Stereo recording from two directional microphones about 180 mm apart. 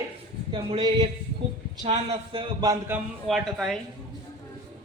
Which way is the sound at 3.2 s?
Centre (ahead or behind).